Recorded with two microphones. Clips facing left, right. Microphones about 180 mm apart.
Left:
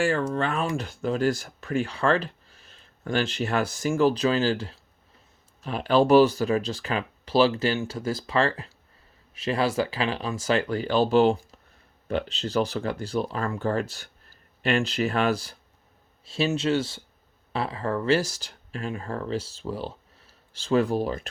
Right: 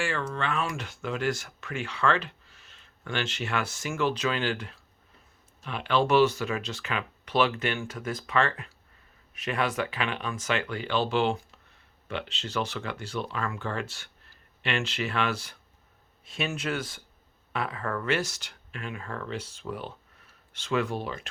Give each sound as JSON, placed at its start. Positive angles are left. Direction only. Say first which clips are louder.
{"t": 0.0, "sound": "speech", "louder": "left 6 dB", "side_deg": 40}